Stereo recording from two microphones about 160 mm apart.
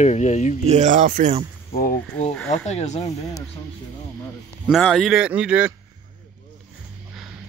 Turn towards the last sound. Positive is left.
turn(degrees=-5)  # may be behind; listen again after turning